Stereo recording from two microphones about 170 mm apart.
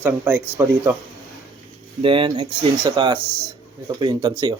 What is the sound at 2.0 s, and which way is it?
Speech, 30° right (ahead or behind).